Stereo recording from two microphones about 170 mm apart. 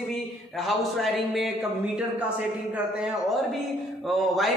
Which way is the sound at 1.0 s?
Centre (ahead or behind).